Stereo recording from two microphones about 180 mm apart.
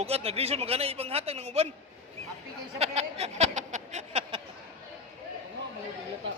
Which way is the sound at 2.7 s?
35° right (ahead or behind).